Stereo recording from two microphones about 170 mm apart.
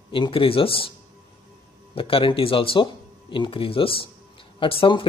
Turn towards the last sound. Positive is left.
turn(degrees=30)  # may be behind; listen again after turning